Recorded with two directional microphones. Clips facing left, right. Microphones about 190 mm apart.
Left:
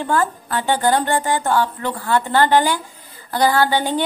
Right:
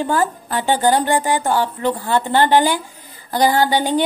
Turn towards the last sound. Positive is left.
turn(degrees=-15)  # may be behind; listen again after turning